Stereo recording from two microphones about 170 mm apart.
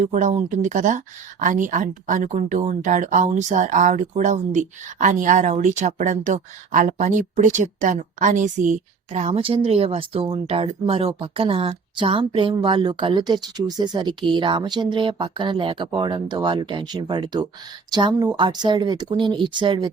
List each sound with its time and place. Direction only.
0.0 s speech: 45° right (ahead or behind); by 19.9 s 30° right (ahead or behind)